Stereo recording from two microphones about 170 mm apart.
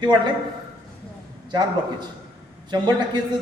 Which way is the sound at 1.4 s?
25° right (ahead or behind).